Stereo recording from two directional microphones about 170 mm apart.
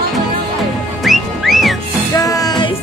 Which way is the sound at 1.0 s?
Centre (ahead or behind).